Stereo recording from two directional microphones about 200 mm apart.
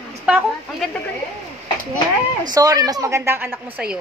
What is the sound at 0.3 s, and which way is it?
Speech, centre (ahead or behind).